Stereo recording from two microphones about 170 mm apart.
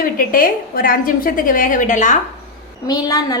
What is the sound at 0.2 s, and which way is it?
A woman's voice, 55° left (ahead or behind).